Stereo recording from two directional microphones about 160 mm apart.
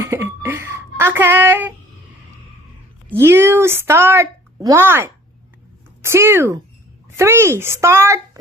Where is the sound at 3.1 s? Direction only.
15° right (ahead or behind).